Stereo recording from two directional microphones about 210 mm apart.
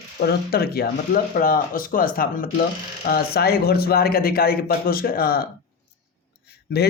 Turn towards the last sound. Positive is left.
turn(degrees=50)  # may be behind; listen again after turning